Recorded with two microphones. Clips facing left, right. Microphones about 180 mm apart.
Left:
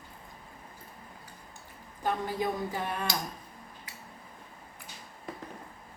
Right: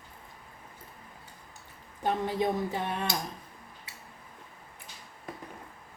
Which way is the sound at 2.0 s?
25° right (ahead or behind).